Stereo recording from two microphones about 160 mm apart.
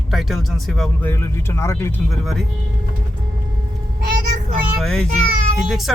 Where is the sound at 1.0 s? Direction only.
15° left (ahead or behind).